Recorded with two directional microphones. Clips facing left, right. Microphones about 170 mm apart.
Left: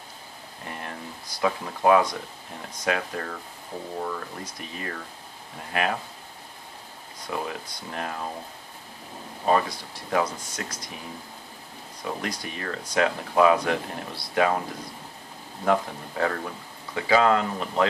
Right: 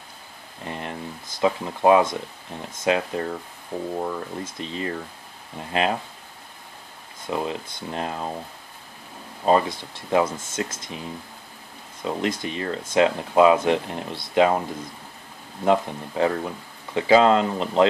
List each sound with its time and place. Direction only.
0.7 s a sound: 20° right (ahead or behind)
1.4 s speech: 25° right (ahead or behind)
7.2 s speech: 25° right (ahead or behind)
9.5 s speech: 25° right (ahead or behind)
12.0 s speech: 25° right (ahead or behind)
15.6 s speech: 20° right (ahead or behind)